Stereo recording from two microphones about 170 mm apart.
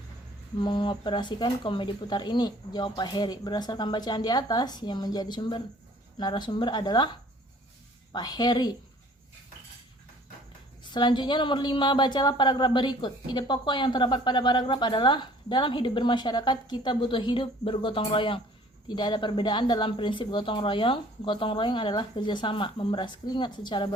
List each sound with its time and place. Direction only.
0.6 s a woman's voice: 30° left (ahead or behind)
10.8 s a woman's voice: 25° left (ahead or behind)